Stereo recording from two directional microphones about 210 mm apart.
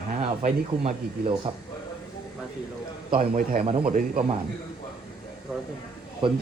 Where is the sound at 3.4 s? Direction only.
40° right (ahead or behind).